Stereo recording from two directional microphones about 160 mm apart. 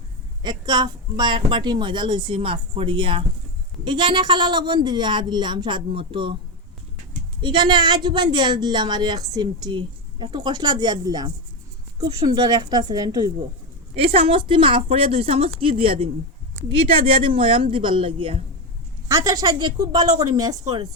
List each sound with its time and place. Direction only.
0.4 s a woman's voice: 25° right (ahead or behind)
7.4 s a woman's voice: 30° right (ahead or behind)
13.9 s a woman's voice: 40° right (ahead or behind)
17.2 s a woman's voice: 35° right (ahead or behind)
19.0 s a woman's voice: 20° right (ahead or behind)